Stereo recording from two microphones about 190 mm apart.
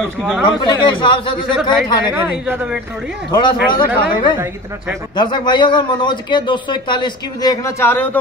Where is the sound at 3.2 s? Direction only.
25° left (ahead or behind).